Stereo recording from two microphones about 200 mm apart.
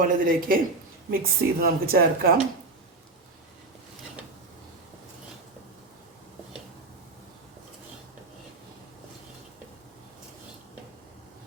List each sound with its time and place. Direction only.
0.0 s speech: 45° right (ahead or behind)